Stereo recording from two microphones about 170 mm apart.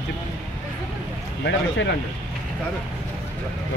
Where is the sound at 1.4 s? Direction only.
85° left.